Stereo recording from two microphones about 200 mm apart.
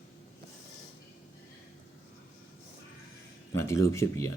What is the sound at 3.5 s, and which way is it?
Speech, 15° left (ahead or behind).